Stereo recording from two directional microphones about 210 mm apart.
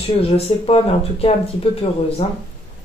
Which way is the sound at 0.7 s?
30° left (ahead or behind).